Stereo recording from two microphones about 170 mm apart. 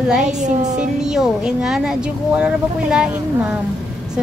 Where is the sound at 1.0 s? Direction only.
5° right (ahead or behind).